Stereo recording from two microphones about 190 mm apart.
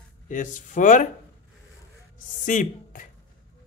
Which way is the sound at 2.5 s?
45° left (ahead or behind).